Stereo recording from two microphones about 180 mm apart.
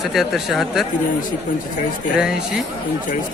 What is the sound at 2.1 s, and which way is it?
Speech, 5° right (ahead or behind).